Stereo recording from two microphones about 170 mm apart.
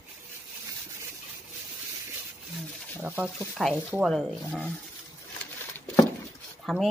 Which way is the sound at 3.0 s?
10° right (ahead or behind).